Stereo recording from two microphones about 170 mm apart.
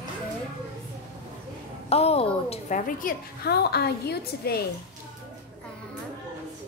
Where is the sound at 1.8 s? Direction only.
35° left (ahead or behind).